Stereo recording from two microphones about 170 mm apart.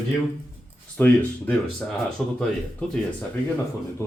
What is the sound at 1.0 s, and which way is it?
Speech, 10° left (ahead or behind).